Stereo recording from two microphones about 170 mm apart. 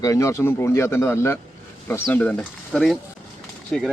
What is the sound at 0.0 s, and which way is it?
A man's voice, 20° left (ahead or behind).